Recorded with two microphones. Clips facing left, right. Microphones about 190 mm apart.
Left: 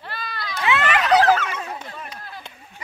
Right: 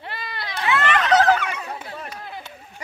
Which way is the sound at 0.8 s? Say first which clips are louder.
Even; 10° left (ahead or behind).